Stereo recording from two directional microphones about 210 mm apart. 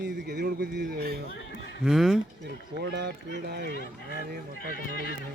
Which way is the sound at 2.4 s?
55° right (ahead or behind).